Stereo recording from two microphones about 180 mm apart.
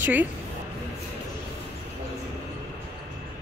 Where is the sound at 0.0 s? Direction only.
10° right (ahead or behind).